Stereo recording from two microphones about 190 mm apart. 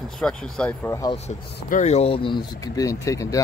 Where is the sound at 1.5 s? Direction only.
45° left (ahead or behind); by 3.4 s 15° left (ahead or behind).